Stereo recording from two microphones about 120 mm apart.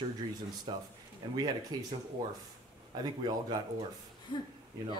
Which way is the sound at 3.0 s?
35° right (ahead or behind).